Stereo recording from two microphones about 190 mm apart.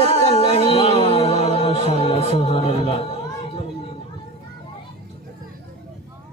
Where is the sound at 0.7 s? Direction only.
30° left (ahead or behind).